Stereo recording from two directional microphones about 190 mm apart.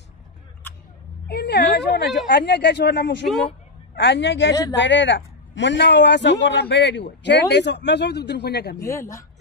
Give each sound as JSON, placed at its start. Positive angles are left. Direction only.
{"t": 1.3, "sound": "a man's voice", "side_deg": 60}
{"t": 8.8, "sound": "speech", "side_deg": 15}